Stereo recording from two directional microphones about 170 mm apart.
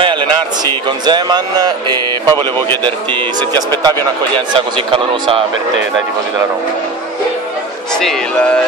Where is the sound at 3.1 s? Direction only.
25° right (ahead or behind).